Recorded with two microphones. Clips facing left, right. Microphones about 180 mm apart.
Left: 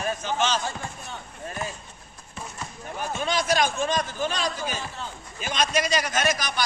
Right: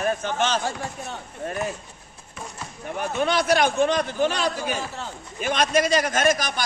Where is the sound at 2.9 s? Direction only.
60° right (ahead or behind).